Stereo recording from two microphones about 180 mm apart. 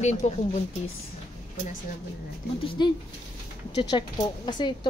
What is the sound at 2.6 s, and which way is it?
A woman's voice, 25° left (ahead or behind).